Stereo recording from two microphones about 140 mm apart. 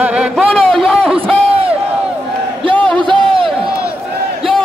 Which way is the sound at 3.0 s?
35° right (ahead or behind).